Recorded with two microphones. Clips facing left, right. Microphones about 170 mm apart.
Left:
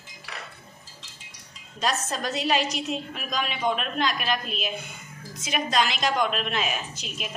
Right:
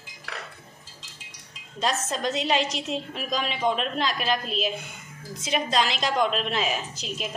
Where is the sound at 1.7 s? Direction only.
25° right (ahead or behind).